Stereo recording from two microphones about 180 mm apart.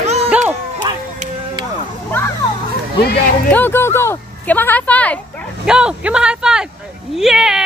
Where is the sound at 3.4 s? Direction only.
10° left (ahead or behind).